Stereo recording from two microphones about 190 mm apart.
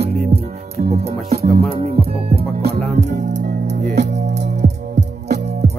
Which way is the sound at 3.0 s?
40° right (ahead or behind).